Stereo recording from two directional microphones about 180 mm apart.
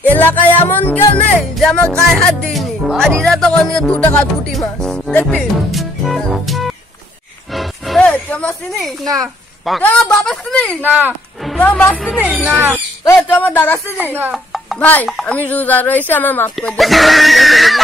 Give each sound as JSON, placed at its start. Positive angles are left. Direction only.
{"t": 0.1, "sound": "music", "side_deg": 10}
{"t": 0.6, "sound": "speech", "side_deg": 10}
{"t": 7.5, "sound": "music", "side_deg": 0}
{"t": 9.0, "sound": "a child's voice", "side_deg": -20}
{"t": 9.7, "sound": "speech", "side_deg": 5}
{"t": 10.8, "sound": "speech", "side_deg": -10}
{"t": 11.5, "sound": "speech", "side_deg": 10}
{"t": 12.4, "sound": "speech", "side_deg": -10}
{"t": 13.0, "sound": "speech", "side_deg": 10}
{"t": 14.3, "sound": "speech", "side_deg": 0}